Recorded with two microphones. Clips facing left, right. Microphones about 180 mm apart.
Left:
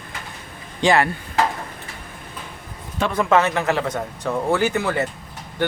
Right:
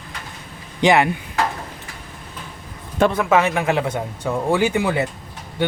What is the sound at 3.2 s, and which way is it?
Speech, 10° right (ahead or behind).